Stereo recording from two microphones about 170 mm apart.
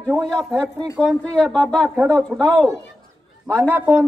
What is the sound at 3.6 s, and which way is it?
Speech, 10° right (ahead or behind).